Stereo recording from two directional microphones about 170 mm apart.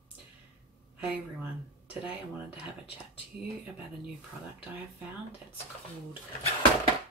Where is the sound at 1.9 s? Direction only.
10° right (ahead or behind).